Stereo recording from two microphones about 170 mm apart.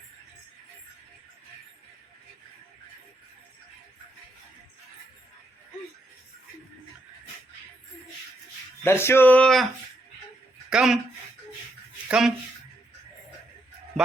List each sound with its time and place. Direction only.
8.8 s speech: 15° left (ahead or behind)
10.7 s speech: 5° right (ahead or behind)
12.0 s speech: 5° right (ahead or behind)